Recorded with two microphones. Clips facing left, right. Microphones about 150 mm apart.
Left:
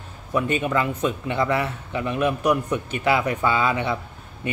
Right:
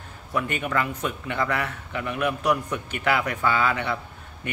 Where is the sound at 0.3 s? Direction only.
20° left (ahead or behind).